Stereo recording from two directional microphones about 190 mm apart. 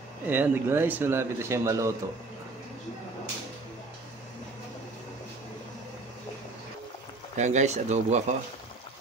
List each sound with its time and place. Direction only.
0.3 s speech: 10° right (ahead or behind)
7.3 s speech: 40° right (ahead or behind)